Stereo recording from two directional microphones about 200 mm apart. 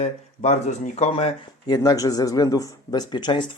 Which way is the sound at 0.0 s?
35° left (ahead or behind).